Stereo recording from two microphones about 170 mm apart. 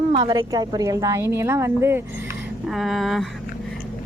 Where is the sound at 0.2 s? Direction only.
30° right (ahead or behind).